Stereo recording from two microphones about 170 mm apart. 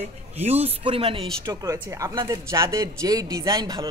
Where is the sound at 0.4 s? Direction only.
40° right (ahead or behind).